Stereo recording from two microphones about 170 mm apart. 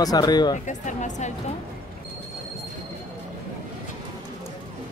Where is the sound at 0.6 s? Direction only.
45° left (ahead or behind).